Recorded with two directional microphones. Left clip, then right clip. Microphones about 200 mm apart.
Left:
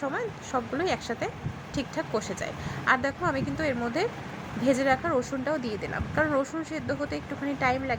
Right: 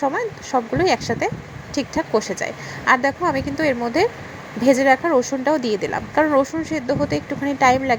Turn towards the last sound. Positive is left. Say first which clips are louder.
# right 11 dB
turn(degrees=-25)  # may be behind; listen again after turning